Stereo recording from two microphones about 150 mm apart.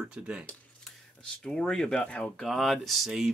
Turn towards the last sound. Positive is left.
turn(degrees=0)  # may be behind; listen again after turning